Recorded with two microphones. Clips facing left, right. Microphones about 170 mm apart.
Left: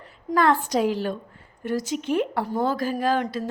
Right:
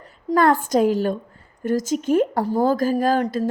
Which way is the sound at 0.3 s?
45° right (ahead or behind).